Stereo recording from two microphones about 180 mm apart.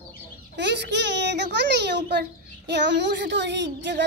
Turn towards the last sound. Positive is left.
turn(degrees=-75)  # may be behind; listen again after turning